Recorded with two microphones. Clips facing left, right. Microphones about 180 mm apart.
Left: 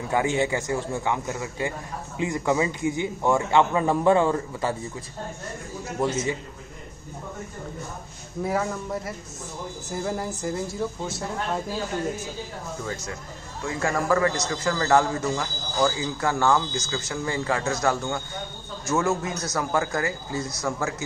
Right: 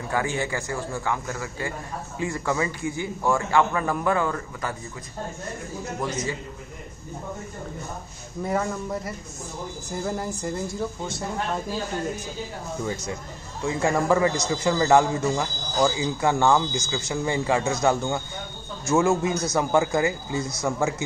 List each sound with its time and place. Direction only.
0.1 s a man's voice: 20° left (ahead or behind)
5.9 s a man's voice: 25° left (ahead or behind)
8.4 s a man's voice: 5° left (ahead or behind)
12.8 s a man's voice: 15° right (ahead or behind)